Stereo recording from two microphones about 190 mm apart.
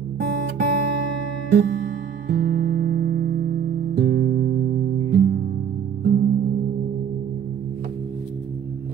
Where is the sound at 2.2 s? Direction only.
55° right (ahead or behind).